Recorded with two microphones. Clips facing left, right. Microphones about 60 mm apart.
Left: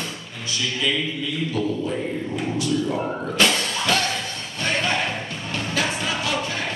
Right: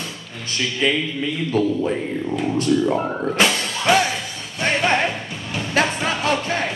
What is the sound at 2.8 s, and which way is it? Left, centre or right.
Speech, right.